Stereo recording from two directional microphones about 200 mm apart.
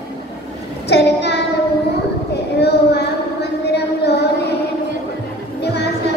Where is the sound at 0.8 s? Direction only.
55° left (ahead or behind).